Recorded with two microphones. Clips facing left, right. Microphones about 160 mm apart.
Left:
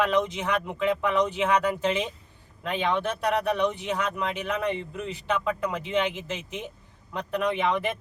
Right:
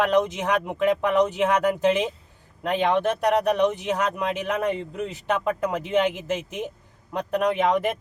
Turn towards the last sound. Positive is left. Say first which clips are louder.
# right 4 dB
turn(degrees=-45)  # may be behind; listen again after turning